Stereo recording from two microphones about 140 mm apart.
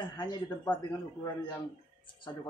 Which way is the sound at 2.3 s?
25° left (ahead or behind).